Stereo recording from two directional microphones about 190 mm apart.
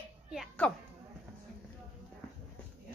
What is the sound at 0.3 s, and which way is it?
Speech, 5° left (ahead or behind).